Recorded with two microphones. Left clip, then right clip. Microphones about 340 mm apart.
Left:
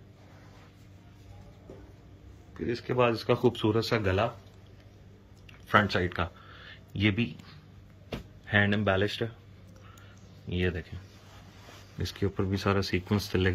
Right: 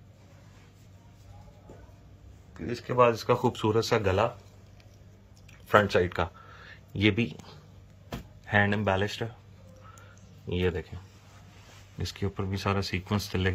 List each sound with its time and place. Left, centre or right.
2.7 s speech: centre
5.7 s speech: right
10.5 s speech: centre
12.0 s speech: centre